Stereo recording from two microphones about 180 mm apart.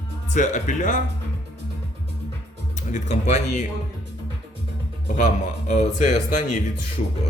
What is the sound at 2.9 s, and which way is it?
Speech, 40° left (ahead or behind).